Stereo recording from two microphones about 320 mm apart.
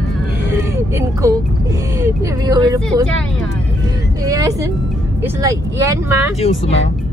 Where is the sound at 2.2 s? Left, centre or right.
Centre.